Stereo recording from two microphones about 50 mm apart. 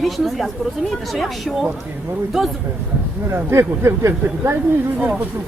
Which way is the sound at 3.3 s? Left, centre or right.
Right.